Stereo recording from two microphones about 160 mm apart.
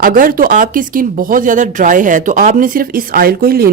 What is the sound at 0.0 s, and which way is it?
A woman's voice, 65° right (ahead or behind).